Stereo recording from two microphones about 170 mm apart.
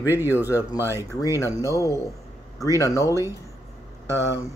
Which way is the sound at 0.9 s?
20° left (ahead or behind).